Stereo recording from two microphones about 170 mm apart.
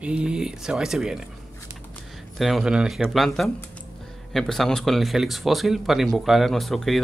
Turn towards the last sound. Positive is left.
turn(degrees=0)  # may be behind; listen again after turning